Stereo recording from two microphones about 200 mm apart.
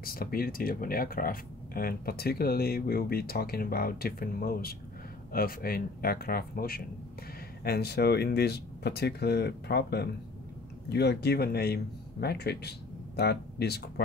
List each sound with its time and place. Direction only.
0.0 s speech: 50° left (ahead or behind)